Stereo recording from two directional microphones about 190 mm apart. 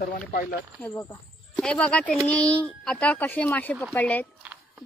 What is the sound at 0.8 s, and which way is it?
Speech, 10° left (ahead or behind).